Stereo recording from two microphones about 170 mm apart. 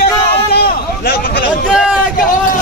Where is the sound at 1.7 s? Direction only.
5° right (ahead or behind).